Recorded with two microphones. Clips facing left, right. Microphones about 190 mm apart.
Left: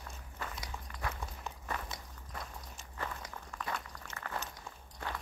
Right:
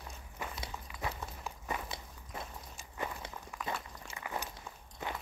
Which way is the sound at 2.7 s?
15° right (ahead or behind).